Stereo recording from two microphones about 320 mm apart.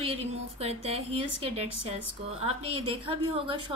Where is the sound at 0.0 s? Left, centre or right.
Centre.